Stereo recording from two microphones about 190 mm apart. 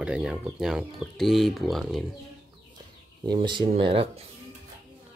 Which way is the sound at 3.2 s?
25° right (ahead or behind).